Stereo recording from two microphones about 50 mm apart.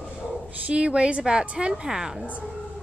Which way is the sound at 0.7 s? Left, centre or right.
Right.